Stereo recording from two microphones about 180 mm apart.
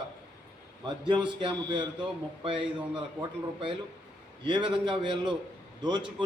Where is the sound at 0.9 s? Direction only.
25° right (ahead or behind).